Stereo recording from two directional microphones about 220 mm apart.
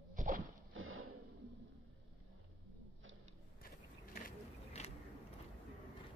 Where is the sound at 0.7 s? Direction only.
65° right (ahead or behind).